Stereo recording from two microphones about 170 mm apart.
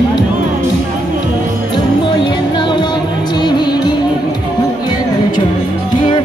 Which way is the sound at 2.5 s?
25° left (ahead or behind).